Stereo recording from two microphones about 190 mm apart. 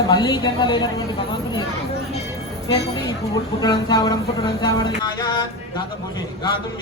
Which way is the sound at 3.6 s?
20° left (ahead or behind).